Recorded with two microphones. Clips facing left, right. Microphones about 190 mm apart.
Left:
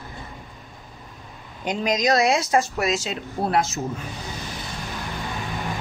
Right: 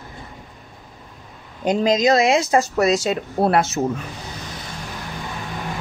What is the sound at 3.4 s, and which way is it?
Speech, 65° right (ahead or behind).